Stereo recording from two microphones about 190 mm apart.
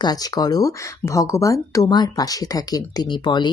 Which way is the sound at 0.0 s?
20° left (ahead or behind).